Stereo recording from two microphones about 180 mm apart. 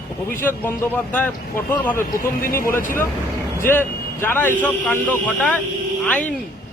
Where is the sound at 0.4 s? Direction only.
10° left (ahead or behind).